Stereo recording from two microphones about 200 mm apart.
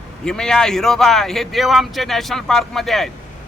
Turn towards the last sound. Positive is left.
turn(degrees=0)  # may be behind; listen again after turning